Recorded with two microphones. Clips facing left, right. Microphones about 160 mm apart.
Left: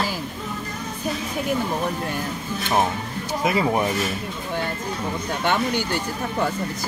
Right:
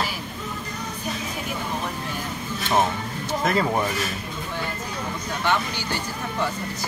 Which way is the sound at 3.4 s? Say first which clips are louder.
Left 2 dB; 10° left (ahead or behind).